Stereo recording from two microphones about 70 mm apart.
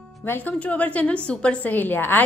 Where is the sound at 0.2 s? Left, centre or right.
Left.